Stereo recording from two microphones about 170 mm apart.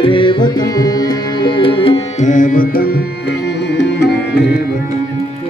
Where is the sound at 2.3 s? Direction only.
50° left (ahead or behind); by 4.4 s 75° left (ahead or behind).